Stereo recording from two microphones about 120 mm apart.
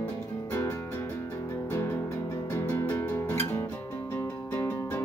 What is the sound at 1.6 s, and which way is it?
Music, 20° left (ahead or behind).